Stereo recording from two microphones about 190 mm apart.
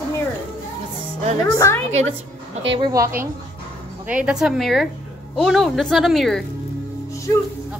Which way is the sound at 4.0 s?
5° right (ahead or behind).